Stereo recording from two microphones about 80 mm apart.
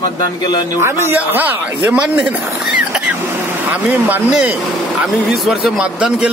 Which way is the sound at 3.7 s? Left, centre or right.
Right.